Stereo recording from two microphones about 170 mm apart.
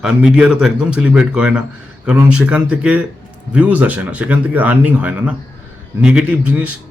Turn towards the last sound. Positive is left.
turn(degrees=-10)  # may be behind; listen again after turning